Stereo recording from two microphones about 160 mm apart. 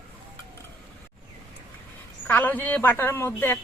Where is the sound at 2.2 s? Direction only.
10° left (ahead or behind).